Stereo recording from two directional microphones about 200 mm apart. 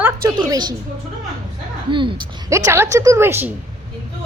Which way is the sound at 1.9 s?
25° right (ahead or behind).